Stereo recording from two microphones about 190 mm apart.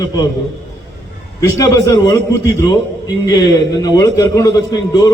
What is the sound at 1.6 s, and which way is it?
Speech, 15° left (ahead or behind).